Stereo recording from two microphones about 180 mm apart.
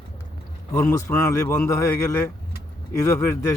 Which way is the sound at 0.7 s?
15° left (ahead or behind).